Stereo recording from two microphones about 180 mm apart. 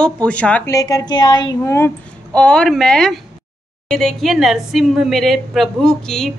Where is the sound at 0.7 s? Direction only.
20° left (ahead or behind).